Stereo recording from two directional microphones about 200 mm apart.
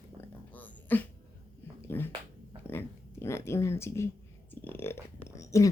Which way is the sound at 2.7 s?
15° left (ahead or behind).